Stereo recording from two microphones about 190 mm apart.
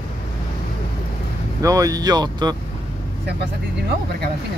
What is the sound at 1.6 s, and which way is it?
Speech, 20° right (ahead or behind).